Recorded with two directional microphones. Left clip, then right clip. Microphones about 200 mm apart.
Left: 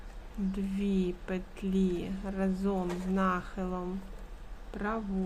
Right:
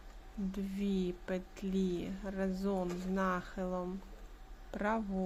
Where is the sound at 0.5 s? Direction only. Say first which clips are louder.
Left 4 dB; 15° right (ahead or behind).